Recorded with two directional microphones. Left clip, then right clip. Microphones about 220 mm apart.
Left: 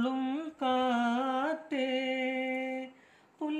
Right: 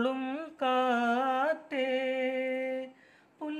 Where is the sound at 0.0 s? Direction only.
30° right (ahead or behind).